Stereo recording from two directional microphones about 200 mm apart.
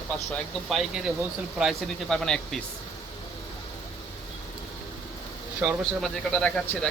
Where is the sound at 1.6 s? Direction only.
Centre (ahead or behind).